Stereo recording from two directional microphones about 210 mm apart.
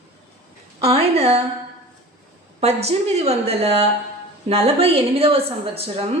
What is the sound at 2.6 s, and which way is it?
A woman's voice, 30° right (ahead or behind).